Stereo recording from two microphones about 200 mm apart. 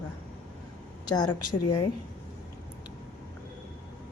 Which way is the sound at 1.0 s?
20° left (ahead or behind).